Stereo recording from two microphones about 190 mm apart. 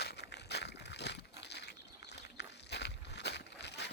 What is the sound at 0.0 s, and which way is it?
Crumpling, 60° left (ahead or behind).